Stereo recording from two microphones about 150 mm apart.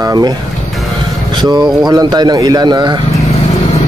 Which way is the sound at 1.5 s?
Centre (ahead or behind).